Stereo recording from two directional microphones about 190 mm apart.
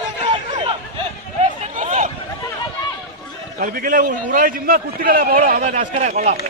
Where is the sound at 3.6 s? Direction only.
45° right (ahead or behind).